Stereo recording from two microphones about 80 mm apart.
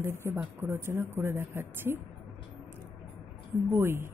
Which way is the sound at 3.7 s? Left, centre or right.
Right.